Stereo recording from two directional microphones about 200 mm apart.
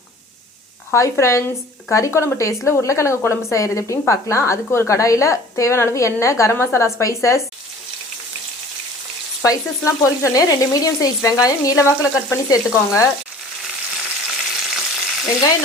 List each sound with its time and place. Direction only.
0.9 s a woman's voice: 15° left (ahead or behind)
9.4 s a woman's voice: 15° left (ahead or behind)
14.6 s frying: centre (ahead or behind)